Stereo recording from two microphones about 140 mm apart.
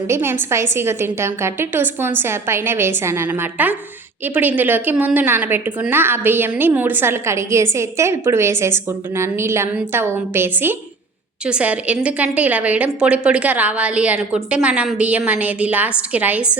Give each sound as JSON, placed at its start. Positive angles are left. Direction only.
{"t": 0.1, "sound": "a woman's voice", "side_deg": -15}